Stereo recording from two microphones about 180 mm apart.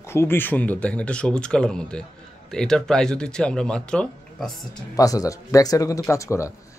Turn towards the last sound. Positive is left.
turn(degrees=15)  # may be behind; listen again after turning